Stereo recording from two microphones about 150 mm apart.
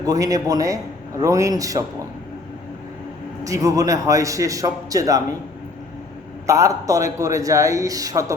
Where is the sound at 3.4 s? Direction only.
20° right (ahead or behind).